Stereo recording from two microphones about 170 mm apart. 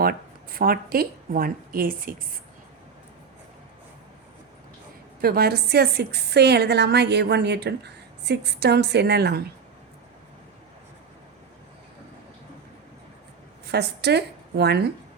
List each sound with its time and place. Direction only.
0.0 s speech: 60° right (ahead or behind)
5.2 s a woman's voice: 65° right (ahead or behind)
13.7 s a woman's voice: 75° right (ahead or behind)